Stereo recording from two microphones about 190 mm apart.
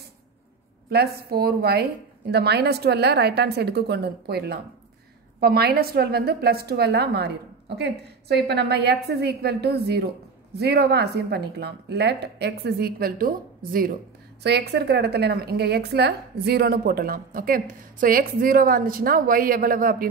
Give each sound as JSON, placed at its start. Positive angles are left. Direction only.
{"t": 0.8, "sound": "a woman's voice", "side_deg": -55}
{"t": 14.4, "sound": "a woman's voice", "side_deg": -60}